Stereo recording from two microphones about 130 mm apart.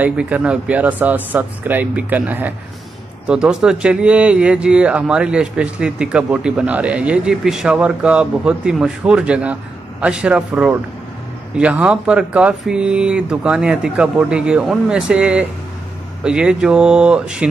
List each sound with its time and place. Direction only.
0.0 s speech: 10° right (ahead or behind)